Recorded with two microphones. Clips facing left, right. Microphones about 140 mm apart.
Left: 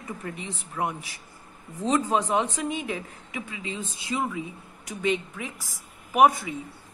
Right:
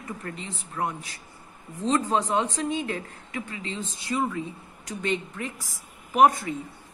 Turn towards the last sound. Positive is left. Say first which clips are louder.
# even
turn(degrees=5)  # may be behind; listen again after turning